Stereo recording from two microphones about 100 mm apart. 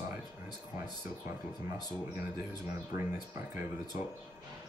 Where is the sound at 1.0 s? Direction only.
25° right (ahead or behind).